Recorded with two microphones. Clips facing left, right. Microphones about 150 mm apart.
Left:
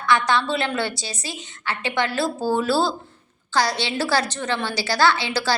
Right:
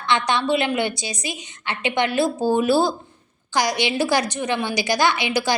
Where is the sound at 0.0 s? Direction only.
20° right (ahead or behind).